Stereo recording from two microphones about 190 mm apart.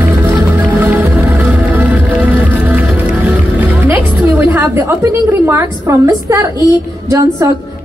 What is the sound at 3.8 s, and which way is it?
A woman's voice, 10° right (ahead or behind).